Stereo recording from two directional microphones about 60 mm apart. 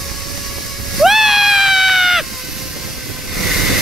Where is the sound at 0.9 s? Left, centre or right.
Centre.